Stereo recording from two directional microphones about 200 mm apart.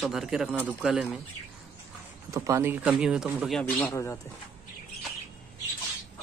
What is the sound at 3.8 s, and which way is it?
Speech, 15° left (ahead or behind).